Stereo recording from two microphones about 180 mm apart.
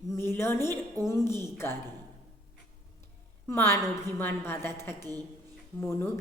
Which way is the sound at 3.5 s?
15° left (ahead or behind).